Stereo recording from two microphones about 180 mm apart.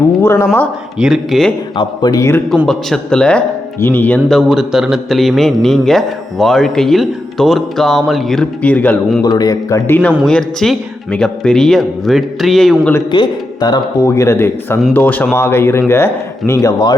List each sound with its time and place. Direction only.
0.2 s speech: 15° left (ahead or behind)
0.9 s a man's voice: 5° right (ahead or behind)
1.7 s speech: 25° left (ahead or behind)
2.6 s a man's voice: 5° left (ahead or behind)
9.2 s a man's voice: 20° left (ahead or behind); by 12.9 s centre (ahead or behind)
13.1 s speech: 25° left (ahead or behind)